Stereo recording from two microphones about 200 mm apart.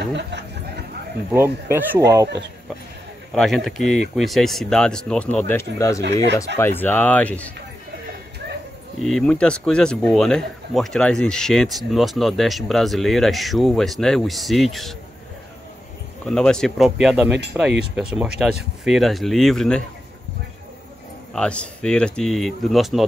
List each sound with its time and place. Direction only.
1.3 s speech: 10° right (ahead or behind)
3.3 s speech: centre (ahead or behind)
5.8 s speech: 15° left (ahead or behind)
9.0 s speech: 5° left (ahead or behind)
16.3 s speech: 5° left (ahead or behind)
21.3 s speech: 5° left (ahead or behind)